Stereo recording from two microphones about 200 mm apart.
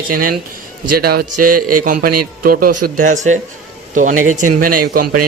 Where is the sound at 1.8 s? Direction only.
45° right (ahead or behind).